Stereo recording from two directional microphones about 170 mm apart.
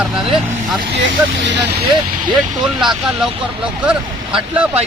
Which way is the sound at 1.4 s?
90° right.